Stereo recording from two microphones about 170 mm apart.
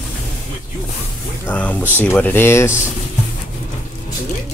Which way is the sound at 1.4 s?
10° left (ahead or behind).